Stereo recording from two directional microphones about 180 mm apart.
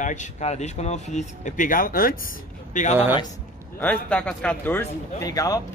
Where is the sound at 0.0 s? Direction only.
40° left (ahead or behind).